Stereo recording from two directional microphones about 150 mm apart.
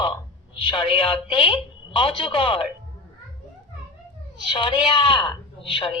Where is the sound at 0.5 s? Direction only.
35° left (ahead or behind).